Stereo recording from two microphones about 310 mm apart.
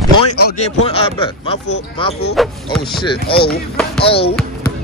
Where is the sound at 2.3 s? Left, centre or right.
Centre.